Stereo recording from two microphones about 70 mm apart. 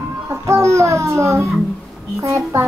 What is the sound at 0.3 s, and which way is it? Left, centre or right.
A child's voice, right.